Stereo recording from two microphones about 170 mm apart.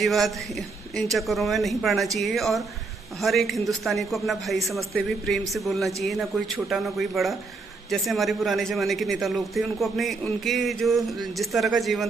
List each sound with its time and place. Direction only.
0.0 s a man's voice: centre (ahead or behind)